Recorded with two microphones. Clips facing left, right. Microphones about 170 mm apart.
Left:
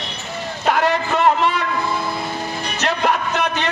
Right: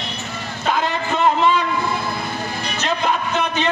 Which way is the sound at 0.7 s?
75° left (ahead or behind).